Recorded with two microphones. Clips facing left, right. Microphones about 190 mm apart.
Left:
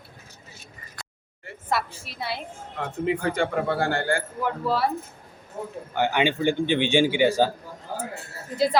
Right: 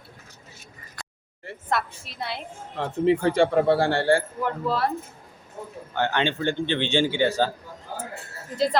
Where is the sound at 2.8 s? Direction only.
30° right (ahead or behind).